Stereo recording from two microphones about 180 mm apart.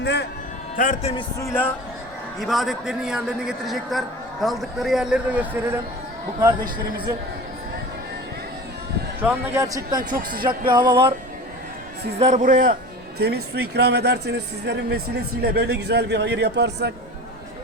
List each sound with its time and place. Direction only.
0.0 s a man's voice: 70° left (ahead or behind)
0.8 s a man's voice: 50° left (ahead or behind)
1.4 s speech: 15° left (ahead or behind)
2.4 s a man's voice: centre (ahead or behind)
9.2 s a man's voice: 10° right (ahead or behind)
10.7 s music: 25° right (ahead or behind)
12.2 s a man's voice: 45° right (ahead or behind)
13.1 s a man's voice: 65° right (ahead or behind)